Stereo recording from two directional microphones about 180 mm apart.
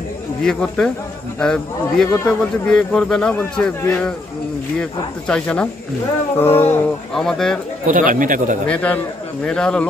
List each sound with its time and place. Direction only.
0.4 s speech: 5° left (ahead or behind)
2.0 s speech: 15° left (ahead or behind)
2.7 s speech: 5° left (ahead or behind)
5.3 s speech: 5° left (ahead or behind)
7.9 s speech: 50° right (ahead or behind)
8.6 s speech: 5° left (ahead or behind)